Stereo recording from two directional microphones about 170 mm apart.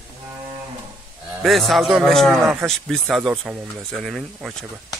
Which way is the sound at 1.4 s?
Centre (ahead or behind).